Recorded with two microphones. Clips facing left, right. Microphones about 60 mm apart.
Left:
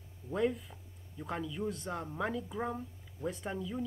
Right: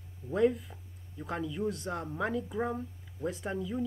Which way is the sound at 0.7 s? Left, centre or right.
Right.